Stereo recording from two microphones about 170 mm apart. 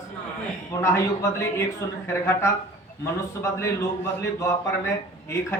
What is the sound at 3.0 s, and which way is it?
A man's voice, 15° left (ahead or behind).